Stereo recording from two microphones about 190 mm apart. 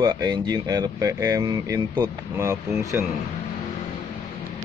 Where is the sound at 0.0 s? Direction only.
20° right (ahead or behind).